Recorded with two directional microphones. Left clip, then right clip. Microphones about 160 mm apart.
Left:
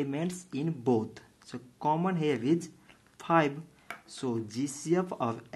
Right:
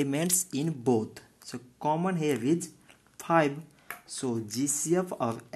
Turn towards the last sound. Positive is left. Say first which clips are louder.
# right 1 dB
turn(degrees=-20)  # may be behind; listen again after turning